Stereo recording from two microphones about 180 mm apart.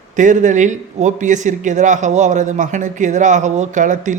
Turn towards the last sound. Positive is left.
turn(degrees=-45)  # may be behind; listen again after turning